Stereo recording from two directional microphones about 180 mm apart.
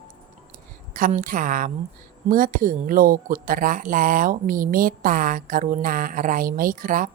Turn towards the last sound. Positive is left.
turn(degrees=-50)  # may be behind; listen again after turning